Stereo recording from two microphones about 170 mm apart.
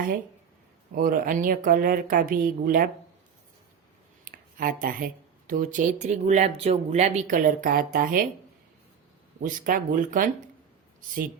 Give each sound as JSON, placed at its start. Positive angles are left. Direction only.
{"t": 0.9, "sound": "a woman's voice", "side_deg": -55}
{"t": 4.3, "sound": "speech", "side_deg": -55}
{"t": 9.4, "sound": "speech", "side_deg": -55}